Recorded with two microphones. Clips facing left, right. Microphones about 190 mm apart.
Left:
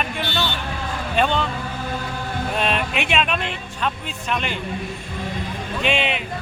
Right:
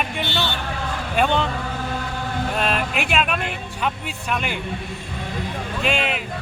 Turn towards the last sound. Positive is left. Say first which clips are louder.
# left 1 dB
turn(degrees=0)  # may be behind; listen again after turning